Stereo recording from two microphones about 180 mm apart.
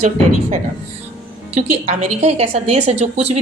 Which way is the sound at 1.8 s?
40° right (ahead or behind).